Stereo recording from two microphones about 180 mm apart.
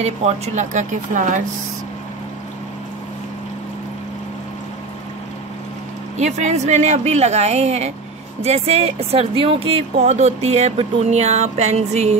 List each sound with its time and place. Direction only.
0.0 s speech: 40° right (ahead or behind)
6.1 s speech: 40° right (ahead or behind)